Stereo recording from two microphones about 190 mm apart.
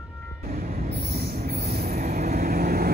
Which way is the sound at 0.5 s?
50° right (ahead or behind).